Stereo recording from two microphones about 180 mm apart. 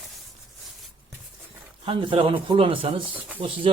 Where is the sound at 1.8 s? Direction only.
30° right (ahead or behind).